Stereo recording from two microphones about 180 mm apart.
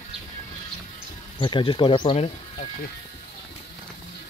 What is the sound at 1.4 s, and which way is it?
Speech, 25° left (ahead or behind).